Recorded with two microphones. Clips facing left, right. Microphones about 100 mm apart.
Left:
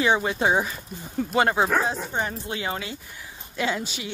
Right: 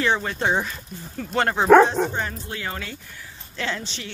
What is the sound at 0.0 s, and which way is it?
Speech, 15° left (ahead or behind).